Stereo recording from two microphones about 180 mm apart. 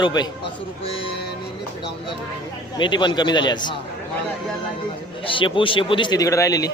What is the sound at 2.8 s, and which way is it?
A man's voice, 25° left (ahead or behind).